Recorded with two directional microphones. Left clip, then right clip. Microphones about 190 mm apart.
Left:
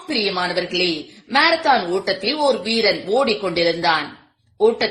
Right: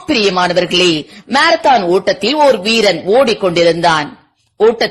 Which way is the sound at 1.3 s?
40° right (ahead or behind).